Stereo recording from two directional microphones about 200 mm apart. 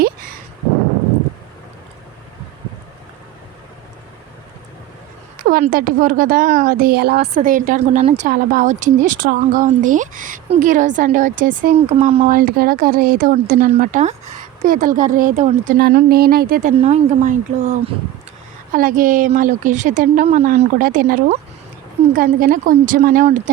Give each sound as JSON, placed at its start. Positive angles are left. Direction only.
{"t": 5.4, "sound": "a woman's voice", "side_deg": -45}
{"t": 12.4, "sound": "a woman's voice", "side_deg": -45}
{"t": 16.8, "sound": "a woman's voice", "side_deg": -35}